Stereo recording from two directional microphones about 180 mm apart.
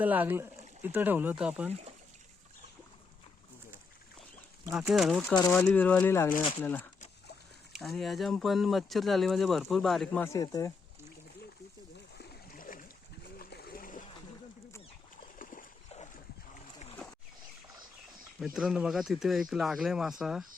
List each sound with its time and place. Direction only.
0.0 s speech: 10° right (ahead or behind)
4.7 s speech: centre (ahead or behind)
10.2 s speech: 20° left (ahead or behind)
12.1 s boat: 65° left (ahead or behind)
13.4 s splash: 60° left (ahead or behind)
15.4 s dog: 50° left (ahead or behind)
17.0 s boat: 5° left (ahead or behind)
18.3 s speech: centre (ahead or behind)